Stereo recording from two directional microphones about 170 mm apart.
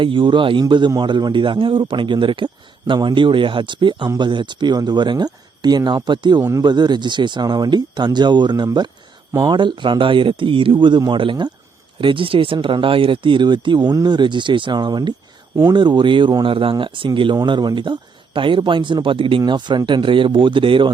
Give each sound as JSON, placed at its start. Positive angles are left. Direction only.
{"t": 0.0, "sound": "a man's voice", "side_deg": -30}